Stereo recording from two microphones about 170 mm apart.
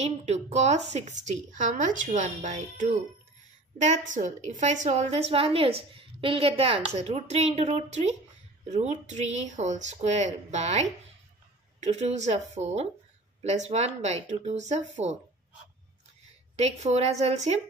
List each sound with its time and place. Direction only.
0.0 s a woman's voice: 40° right (ahead or behind)
16.5 s a woman's voice: 40° right (ahead or behind)